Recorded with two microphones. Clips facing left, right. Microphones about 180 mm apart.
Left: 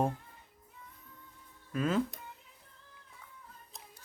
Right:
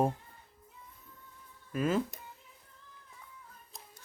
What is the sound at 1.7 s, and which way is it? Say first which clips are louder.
Speech: even; 5° right (ahead or behind).